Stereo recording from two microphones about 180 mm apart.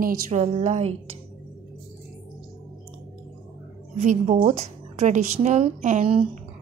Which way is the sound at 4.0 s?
40° right (ahead or behind).